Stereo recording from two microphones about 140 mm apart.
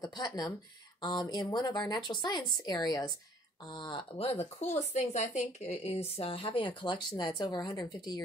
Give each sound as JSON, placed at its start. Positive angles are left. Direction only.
{"t": 0.0, "sound": "speech", "side_deg": 30}